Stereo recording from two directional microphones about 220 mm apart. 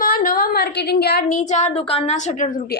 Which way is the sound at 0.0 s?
40° left (ahead or behind).